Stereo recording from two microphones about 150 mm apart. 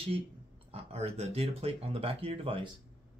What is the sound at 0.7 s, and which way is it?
Speech, 40° right (ahead or behind).